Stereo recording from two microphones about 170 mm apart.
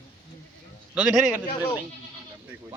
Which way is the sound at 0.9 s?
5° right (ahead or behind).